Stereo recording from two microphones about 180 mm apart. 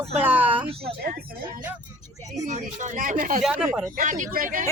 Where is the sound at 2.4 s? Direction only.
45° right (ahead or behind).